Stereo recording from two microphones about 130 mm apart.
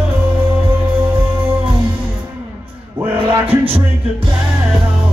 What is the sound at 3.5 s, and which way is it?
Music, 45° right (ahead or behind).